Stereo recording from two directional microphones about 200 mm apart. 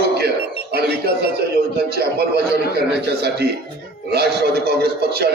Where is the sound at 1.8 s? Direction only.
50° right (ahead or behind).